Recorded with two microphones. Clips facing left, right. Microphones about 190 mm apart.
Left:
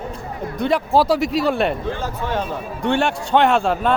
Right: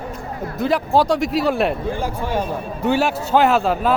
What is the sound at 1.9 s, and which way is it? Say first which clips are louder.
A man's voice: right 1 dB; 10° right (ahead or behind).